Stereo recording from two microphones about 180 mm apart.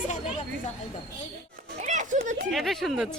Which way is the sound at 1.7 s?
40° right (ahead or behind).